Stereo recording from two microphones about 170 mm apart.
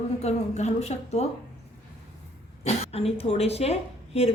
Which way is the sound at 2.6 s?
40° left (ahead or behind).